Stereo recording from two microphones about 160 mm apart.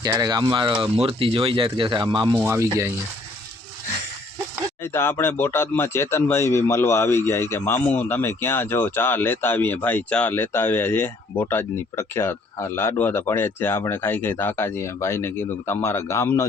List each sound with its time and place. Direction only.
0.0 s speech: 25° right (ahead or behind)
2.4 s speech: 15° right (ahead or behind)
4.8 s speech: 15° left (ahead or behind)